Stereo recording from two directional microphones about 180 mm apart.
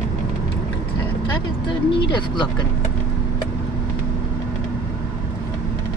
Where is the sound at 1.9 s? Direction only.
25° left (ahead or behind).